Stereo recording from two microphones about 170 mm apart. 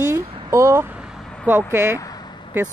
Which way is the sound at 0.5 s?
15° right (ahead or behind).